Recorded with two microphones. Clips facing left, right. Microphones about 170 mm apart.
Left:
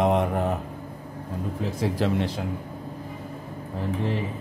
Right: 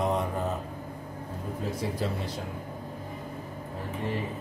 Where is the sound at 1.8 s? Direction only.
90° left.